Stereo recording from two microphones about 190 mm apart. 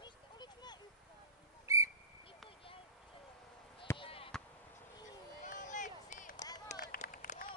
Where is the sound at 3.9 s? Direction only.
30° left (ahead or behind).